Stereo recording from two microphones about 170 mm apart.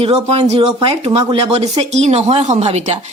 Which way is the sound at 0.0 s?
35° right (ahead or behind).